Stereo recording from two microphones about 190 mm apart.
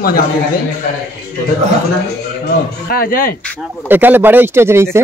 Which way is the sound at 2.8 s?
50° left (ahead or behind).